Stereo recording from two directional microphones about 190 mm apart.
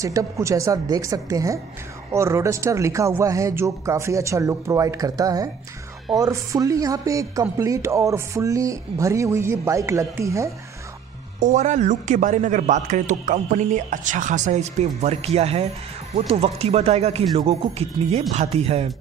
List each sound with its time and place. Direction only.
0.0 s speech: 15° right (ahead or behind)
11.3 s a man's voice: 40° right (ahead or behind)